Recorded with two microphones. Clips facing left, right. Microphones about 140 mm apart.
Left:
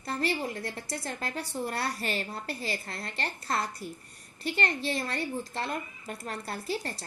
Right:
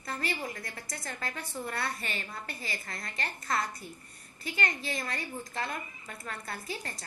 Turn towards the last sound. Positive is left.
turn(degrees=30)  # may be behind; listen again after turning